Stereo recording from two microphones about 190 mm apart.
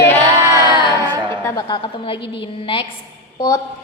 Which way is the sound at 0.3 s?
15° right (ahead or behind).